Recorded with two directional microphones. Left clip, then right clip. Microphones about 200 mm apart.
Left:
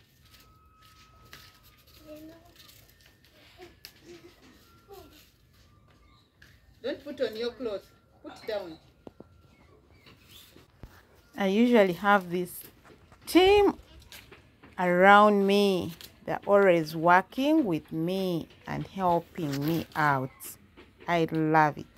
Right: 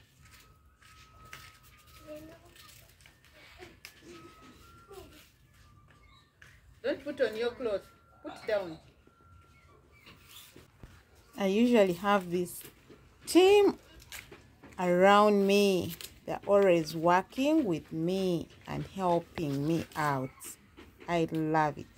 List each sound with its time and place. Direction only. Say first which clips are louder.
6.8 s speech: right 1 dB; 5° left (ahead or behind)
11.3 s speech: left 3 dB; 10° left (ahead or behind)
14.8 s speech: left 4 dB; 10° left (ahead or behind)